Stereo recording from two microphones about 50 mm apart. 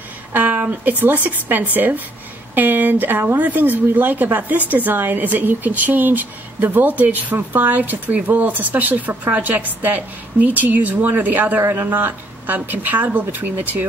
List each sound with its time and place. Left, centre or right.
0.3 s speech: right